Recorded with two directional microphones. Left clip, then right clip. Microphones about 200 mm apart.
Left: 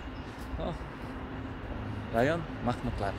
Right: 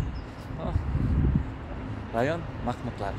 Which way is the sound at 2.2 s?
Centre (ahead or behind).